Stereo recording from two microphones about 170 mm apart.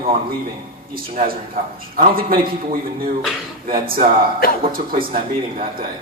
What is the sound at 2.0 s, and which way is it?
Speech, 60° right (ahead or behind).